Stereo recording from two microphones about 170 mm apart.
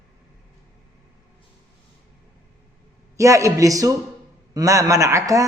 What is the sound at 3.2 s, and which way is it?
A woman's voice, 20° right (ahead or behind).